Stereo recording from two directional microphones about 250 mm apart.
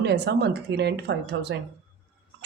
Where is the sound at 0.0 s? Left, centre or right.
Right.